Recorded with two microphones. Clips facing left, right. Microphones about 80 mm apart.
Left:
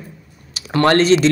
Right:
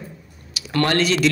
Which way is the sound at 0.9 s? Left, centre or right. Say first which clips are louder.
Left 7 dB; left.